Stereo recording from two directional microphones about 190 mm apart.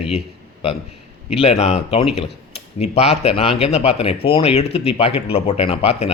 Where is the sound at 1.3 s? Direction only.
30° left (ahead or behind).